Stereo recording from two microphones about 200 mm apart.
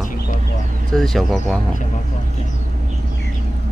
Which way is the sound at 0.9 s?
Centre (ahead or behind).